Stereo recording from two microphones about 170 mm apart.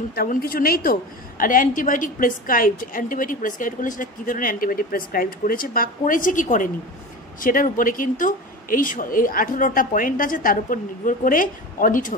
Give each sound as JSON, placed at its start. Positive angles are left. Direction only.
{"t": 0.1, "sound": "a woman's voice", "side_deg": 60}